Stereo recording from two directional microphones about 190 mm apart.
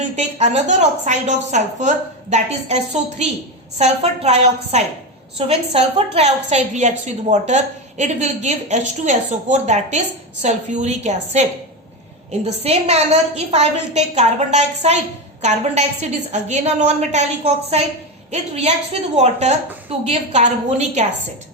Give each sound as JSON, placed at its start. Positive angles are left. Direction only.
{"t": 0.0, "sound": "a woman's voice", "side_deg": -35}
{"t": 12.5, "sound": "a woman's voice", "side_deg": -35}